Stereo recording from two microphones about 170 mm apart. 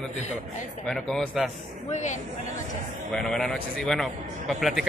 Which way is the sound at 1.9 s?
45° left (ahead or behind).